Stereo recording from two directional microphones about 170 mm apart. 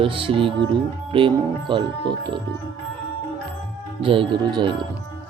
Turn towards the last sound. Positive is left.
turn(degrees=-25)  # may be behind; listen again after turning